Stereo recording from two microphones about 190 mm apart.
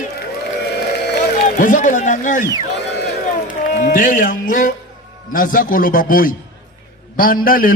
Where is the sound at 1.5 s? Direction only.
45° left (ahead or behind).